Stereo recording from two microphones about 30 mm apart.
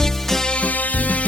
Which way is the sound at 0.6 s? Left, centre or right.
Left.